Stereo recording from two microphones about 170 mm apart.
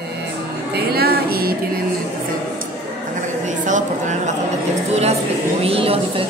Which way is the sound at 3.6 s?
45° right (ahead or behind).